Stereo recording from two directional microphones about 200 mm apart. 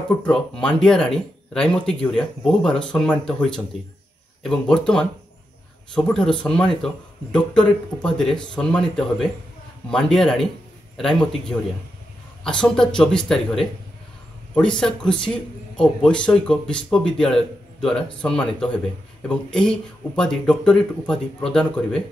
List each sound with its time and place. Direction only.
0.1 s speech: 5° left (ahead or behind)